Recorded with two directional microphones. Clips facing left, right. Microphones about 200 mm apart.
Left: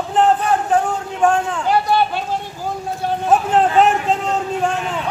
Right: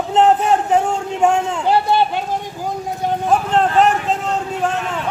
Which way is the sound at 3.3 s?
5° left (ahead or behind).